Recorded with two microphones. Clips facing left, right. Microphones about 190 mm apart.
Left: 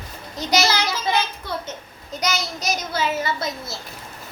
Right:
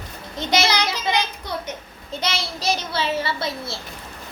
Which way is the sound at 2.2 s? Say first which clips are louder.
Left 2 dB; 30° right (ahead or behind).